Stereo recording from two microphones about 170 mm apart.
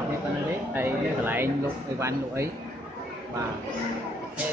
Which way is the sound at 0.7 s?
10° right (ahead or behind).